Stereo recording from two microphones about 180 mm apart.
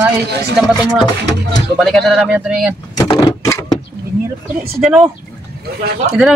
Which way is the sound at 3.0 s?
25° left (ahead or behind).